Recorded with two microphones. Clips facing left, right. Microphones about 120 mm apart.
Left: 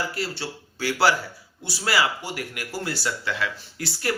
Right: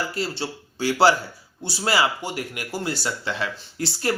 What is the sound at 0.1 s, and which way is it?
Speech, 25° right (ahead or behind).